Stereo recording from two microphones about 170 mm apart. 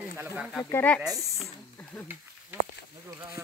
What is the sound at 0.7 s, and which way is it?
Speech, 10° left (ahead or behind).